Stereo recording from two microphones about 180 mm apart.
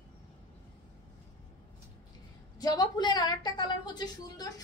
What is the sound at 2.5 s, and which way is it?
A woman's voice, 20° left (ahead or behind).